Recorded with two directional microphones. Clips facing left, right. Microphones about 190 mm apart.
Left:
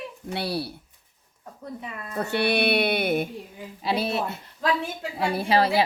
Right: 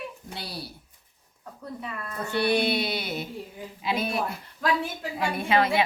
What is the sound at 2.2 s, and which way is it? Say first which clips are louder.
Mantra: left 1 dB; 65° left (ahead or behind).